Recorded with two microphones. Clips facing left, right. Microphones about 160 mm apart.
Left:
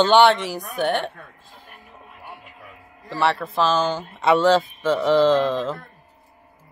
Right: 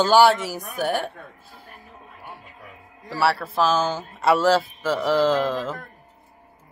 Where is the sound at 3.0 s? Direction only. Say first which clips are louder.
Even; 5° right (ahead or behind).